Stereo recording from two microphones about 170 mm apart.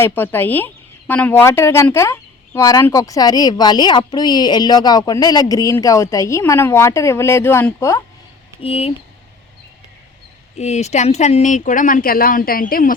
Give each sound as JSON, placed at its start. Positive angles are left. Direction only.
{"t": 0.0, "sound": "speech", "side_deg": 15}
{"t": 8.6, "sound": "speech", "side_deg": 35}
{"t": 10.6, "sound": "speech", "side_deg": 40}